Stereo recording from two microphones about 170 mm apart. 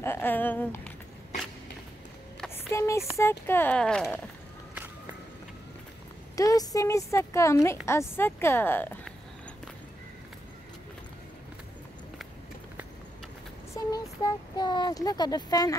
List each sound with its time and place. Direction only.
0.0 s speech: 15° left (ahead or behind)
2.5 s speech: 15° left (ahead or behind)
6.3 s speech: 20° left (ahead or behind)
13.9 s speech: 25° left (ahead or behind)